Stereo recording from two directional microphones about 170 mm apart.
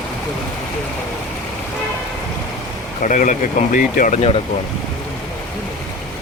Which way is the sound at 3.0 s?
50° left (ahead or behind).